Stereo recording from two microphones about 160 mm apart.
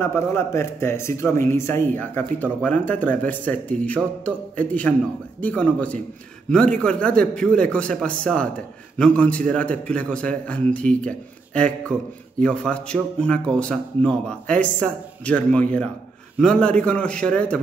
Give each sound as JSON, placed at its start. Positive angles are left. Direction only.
{"t": 0.0, "sound": "speech", "side_deg": 15}